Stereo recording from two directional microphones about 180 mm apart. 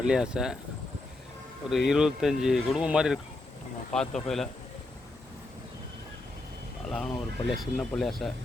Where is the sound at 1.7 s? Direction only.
Centre (ahead or behind).